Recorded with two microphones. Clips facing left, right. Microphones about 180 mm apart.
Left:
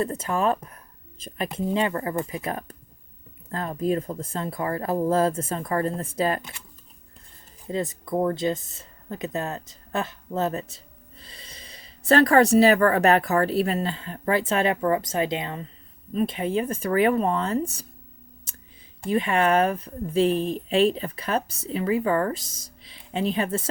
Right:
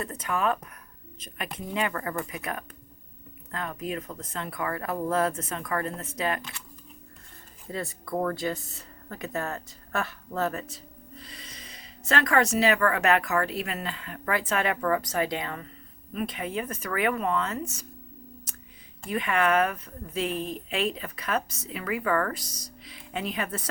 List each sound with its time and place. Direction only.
0.0 s a woman's voice: 25° left (ahead or behind)
7.7 s a woman's voice: 20° left (ahead or behind)
19.0 s a woman's voice: 30° left (ahead or behind)